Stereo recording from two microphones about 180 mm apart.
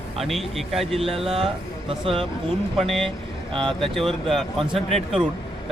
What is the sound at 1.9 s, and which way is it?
Speech, 30° right (ahead or behind).